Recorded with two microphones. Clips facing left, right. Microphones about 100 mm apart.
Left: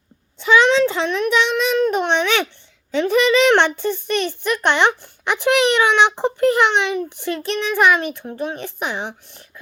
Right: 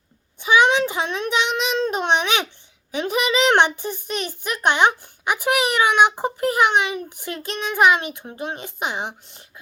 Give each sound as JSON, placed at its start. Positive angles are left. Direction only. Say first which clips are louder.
{"t": 0.3, "sound": "child singing", "louder": "left 2 dB", "side_deg": -15}
{"t": 2.9, "sound": "a child's voice", "louder": "left 6 dB", "side_deg": -15}